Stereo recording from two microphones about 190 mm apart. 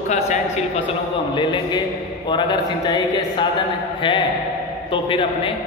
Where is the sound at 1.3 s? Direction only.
25° left (ahead or behind).